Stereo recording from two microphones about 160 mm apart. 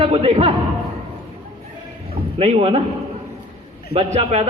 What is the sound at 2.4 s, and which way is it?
Speech, 40° right (ahead or behind).